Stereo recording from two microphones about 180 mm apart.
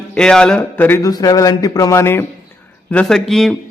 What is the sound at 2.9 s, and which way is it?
Speech, centre (ahead or behind).